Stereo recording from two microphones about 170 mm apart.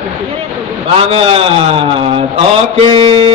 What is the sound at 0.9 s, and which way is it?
Mantra, 35° right (ahead or behind).